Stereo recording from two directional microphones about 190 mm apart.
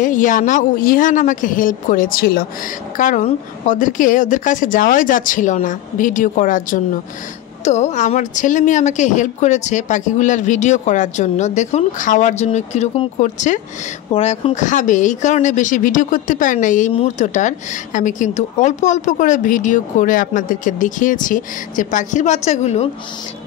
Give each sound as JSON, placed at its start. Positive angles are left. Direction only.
{"t": 0.0, "sound": "a woman's voice", "side_deg": 45}